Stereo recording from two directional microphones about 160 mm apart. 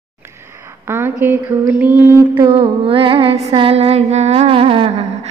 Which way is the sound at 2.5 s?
35° right (ahead or behind).